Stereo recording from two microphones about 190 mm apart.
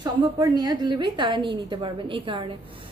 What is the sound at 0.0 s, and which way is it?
A woman's voice, 20° right (ahead or behind).